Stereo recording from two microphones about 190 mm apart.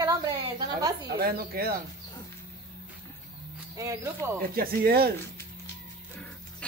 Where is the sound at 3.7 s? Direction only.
15° right (ahead or behind).